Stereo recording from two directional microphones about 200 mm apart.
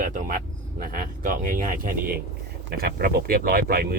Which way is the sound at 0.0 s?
45° right (ahead or behind).